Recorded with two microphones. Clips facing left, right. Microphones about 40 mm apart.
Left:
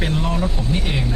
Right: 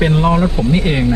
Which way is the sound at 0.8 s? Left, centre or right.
Right.